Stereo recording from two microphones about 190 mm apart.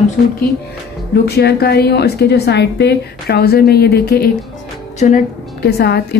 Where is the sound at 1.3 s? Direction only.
60° left (ahead or behind).